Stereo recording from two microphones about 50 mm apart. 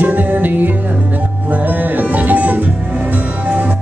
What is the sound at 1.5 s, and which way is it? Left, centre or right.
Speech, right.